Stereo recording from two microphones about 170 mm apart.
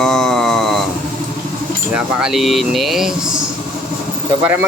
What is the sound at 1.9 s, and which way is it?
Speech, 5° right (ahead or behind).